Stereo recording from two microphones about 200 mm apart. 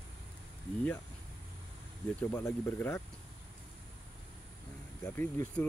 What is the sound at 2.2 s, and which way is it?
Speech, 10° left (ahead or behind).